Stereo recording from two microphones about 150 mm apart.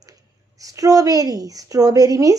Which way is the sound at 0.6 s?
25° right (ahead or behind).